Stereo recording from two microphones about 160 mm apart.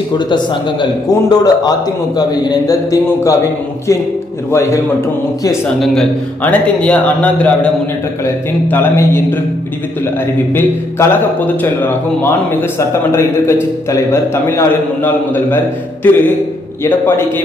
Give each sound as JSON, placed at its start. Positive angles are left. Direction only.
{"t": 0.3, "sound": "a man's voice", "side_deg": 30}
{"t": 4.5, "sound": "a man's voice", "side_deg": 15}
{"t": 5.8, "sound": "a man's voice", "side_deg": 5}
{"t": 10.5, "sound": "a man's voice", "side_deg": 15}